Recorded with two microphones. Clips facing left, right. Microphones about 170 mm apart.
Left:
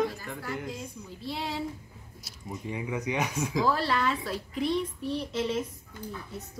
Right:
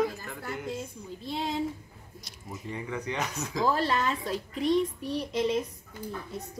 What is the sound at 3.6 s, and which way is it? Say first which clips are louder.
Speech: right 2 dB; 20° right (ahead or behind).